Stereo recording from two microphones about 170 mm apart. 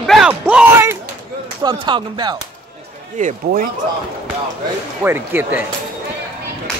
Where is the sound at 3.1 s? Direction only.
50° right (ahead or behind).